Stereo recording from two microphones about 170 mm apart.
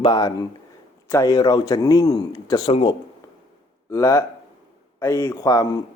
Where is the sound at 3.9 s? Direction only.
20° left (ahead or behind).